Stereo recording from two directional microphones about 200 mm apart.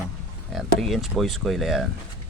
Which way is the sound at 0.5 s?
Centre (ahead or behind).